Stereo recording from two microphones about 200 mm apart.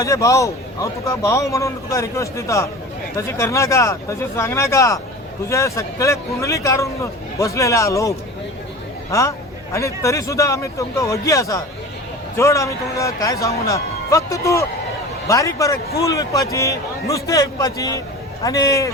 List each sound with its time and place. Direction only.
0.0 s a man's voice: 15° left (ahead or behind)